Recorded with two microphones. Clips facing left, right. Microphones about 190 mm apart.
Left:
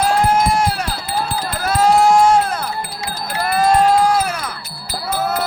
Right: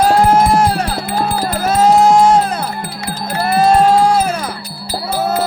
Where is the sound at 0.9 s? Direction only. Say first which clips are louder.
Right 5 dB; 60° right (ahead or behind).